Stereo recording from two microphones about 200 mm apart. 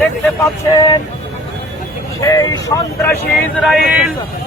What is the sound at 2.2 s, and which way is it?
Speech, 15° left (ahead or behind).